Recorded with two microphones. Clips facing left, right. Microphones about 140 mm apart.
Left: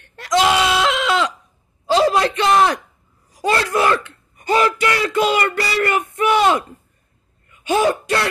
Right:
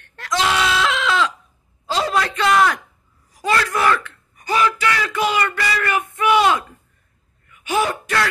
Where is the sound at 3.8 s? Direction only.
30° left (ahead or behind).